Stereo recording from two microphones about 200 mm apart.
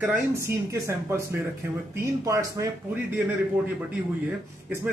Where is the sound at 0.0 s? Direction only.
10° right (ahead or behind).